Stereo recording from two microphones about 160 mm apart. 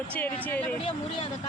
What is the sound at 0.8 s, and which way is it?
Speech, 35° left (ahead or behind).